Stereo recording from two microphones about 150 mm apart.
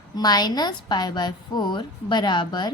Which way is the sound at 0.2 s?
25° left (ahead or behind).